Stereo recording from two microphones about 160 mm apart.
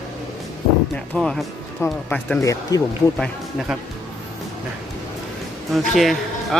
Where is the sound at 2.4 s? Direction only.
20° left (ahead or behind).